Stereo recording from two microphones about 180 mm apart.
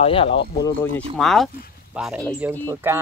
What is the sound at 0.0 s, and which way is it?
Speech, 30° left (ahead or behind).